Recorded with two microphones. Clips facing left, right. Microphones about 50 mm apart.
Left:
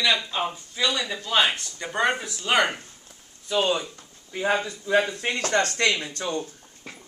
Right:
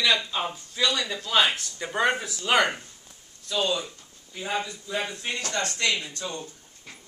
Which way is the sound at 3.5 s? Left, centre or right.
Left.